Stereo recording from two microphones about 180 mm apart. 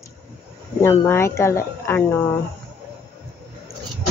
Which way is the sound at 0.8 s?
15° left (ahead or behind).